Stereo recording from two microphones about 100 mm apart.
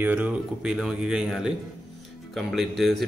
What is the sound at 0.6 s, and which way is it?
A man's voice, 5° right (ahead or behind).